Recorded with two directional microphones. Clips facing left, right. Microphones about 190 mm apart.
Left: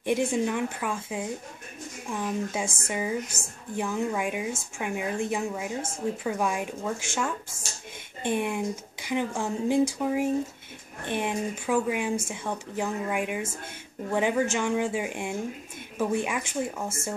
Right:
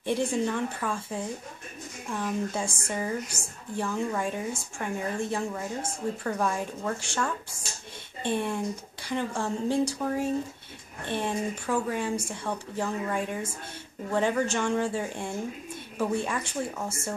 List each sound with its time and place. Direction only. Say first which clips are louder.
0.0 s a woman's voice: left 2 dB; 10° left (ahead or behind)